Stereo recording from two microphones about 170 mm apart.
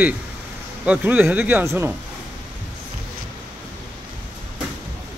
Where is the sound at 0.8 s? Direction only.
10° right (ahead or behind).